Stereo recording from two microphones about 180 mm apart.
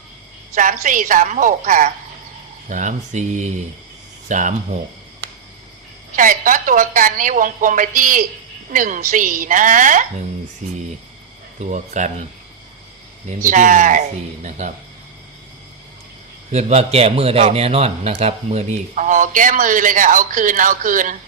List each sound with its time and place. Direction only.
0.5 s a man's voice: 45° right (ahead or behind)
6.1 s a man's voice: 50° right (ahead or behind)
13.4 s a man's voice: 45° right (ahead or behind)
16.5 s a man's voice: 40° right (ahead or behind)